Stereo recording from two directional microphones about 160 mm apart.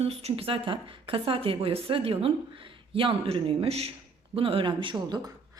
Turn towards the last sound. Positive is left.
turn(degrees=-25)  # may be behind; listen again after turning